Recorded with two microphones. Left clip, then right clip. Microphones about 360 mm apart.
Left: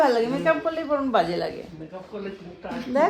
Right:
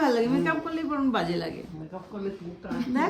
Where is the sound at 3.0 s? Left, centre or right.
Centre.